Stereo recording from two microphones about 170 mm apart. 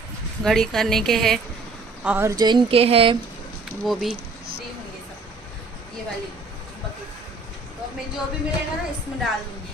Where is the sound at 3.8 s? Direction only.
Centre (ahead or behind).